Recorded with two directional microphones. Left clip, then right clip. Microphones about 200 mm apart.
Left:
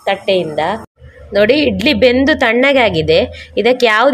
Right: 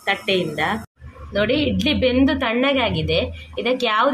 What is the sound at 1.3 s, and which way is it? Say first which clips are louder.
A woman's voice: left 9 dB; 25° left (ahead or behind).